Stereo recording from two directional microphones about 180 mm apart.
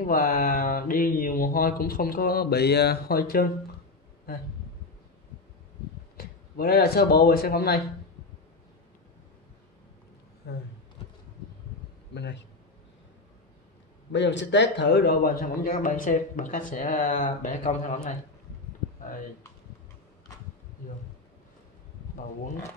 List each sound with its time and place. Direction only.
0.0 s speech: 50° left (ahead or behind)
6.1 s speech: 60° left (ahead or behind)
10.4 s a man's voice: 65° left (ahead or behind)
12.1 s a man's voice: 75° left (ahead or behind)
14.1 s a man's voice: 80° left; by 15.5 s 60° left (ahead or behind)
15.6 s speech: 45° left (ahead or behind)